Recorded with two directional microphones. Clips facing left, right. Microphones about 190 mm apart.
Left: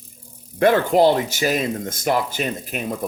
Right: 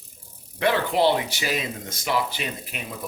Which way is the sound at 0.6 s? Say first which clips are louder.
Left 6 dB; 45° left (ahead or behind).